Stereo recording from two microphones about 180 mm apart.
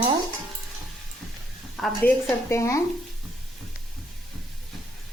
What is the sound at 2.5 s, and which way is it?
Speech, 15° left (ahead or behind).